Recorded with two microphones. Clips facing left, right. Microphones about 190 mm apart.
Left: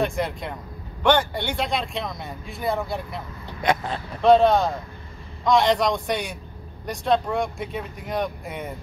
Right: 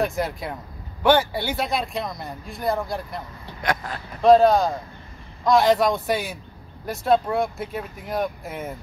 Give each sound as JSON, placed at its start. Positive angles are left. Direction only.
{"t": 0.0, "sound": "speech", "side_deg": 0}
{"t": 3.6, "sound": "speech", "side_deg": 25}
{"t": 4.2, "sound": "speech", "side_deg": 0}